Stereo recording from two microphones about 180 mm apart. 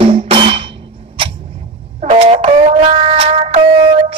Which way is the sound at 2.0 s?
35° right (ahead or behind).